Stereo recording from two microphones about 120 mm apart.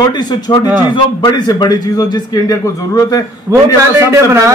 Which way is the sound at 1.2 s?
35° left (ahead or behind).